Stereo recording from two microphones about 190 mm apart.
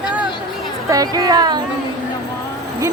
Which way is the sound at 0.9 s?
20° right (ahead or behind).